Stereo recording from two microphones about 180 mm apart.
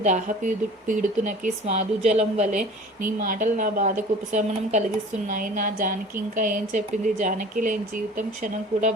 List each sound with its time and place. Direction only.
0.0 s speech: 40° right (ahead or behind)